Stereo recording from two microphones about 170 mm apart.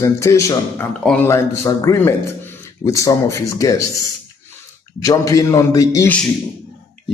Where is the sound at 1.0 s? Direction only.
5° left (ahead or behind).